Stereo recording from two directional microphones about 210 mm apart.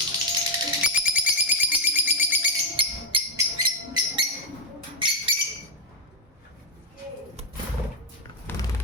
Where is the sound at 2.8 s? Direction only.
20° right (ahead or behind).